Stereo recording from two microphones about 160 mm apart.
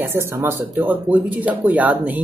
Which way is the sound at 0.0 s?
15° right (ahead or behind).